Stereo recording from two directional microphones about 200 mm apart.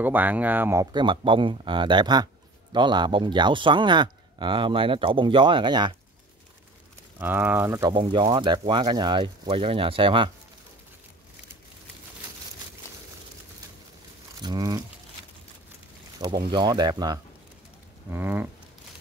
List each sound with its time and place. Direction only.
0.0 s speech: 10° right (ahead or behind)
0.9 s speech: 25° right (ahead or behind)
7.2 s speech: 10° right (ahead or behind)
7.9 s speech: 25° right (ahead or behind)
14.4 s speech: 20° right (ahead or behind)
16.4 s speech: 20° right (ahead or behind)